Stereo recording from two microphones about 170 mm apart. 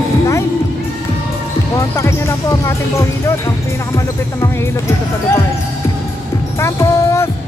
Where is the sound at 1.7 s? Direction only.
15° left (ahead or behind).